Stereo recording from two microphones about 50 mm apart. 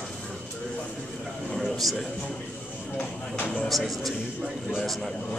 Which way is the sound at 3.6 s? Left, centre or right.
Centre.